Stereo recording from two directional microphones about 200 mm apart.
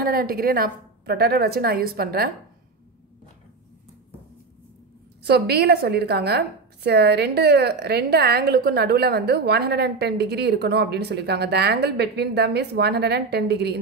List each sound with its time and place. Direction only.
0.0 s a woman's voice: 50° right (ahead or behind)
5.2 s a woman's voice: 55° right (ahead or behind)